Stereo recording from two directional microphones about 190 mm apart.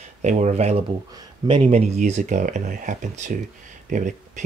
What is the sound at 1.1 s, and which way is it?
Speech, 25° right (ahead or behind).